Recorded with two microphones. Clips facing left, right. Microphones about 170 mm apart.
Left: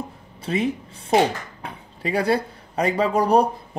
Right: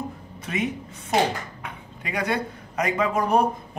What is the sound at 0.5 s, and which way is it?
Speech, 30° left (ahead or behind).